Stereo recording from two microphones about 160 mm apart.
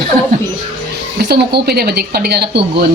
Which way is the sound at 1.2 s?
80° right.